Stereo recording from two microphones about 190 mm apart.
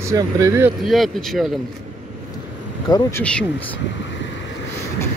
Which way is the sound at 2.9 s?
20° left (ahead or behind).